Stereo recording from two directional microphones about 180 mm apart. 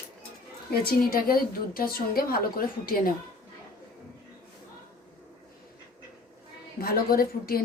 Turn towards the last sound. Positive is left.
turn(degrees=55)  # may be behind; listen again after turning